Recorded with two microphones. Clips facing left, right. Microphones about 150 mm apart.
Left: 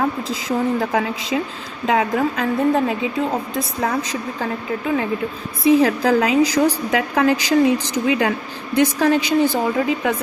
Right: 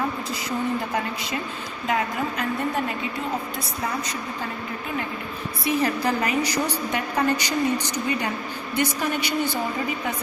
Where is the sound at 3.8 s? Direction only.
90° left.